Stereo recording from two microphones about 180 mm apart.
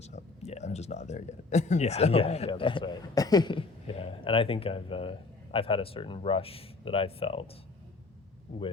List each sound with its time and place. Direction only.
0.0 s speech: 40° left (ahead or behind)